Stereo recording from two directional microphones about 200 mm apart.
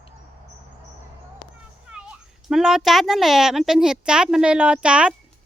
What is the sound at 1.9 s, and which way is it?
A child's voice, 5° right (ahead or behind).